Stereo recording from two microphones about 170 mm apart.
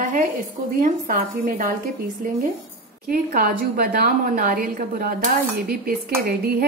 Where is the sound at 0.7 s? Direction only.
60° right (ahead or behind).